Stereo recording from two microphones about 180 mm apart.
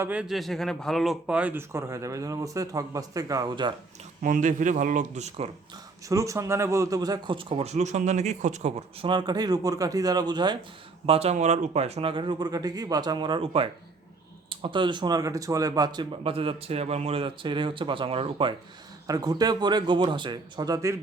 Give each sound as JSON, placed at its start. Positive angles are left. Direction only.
{"t": 0.0, "sound": "speech", "side_deg": -5}
{"t": 4.2, "sound": "speech", "side_deg": -45}
{"t": 6.1, "sound": "a man's voice", "side_deg": -15}
{"t": 11.0, "sound": "a man's voice", "side_deg": -35}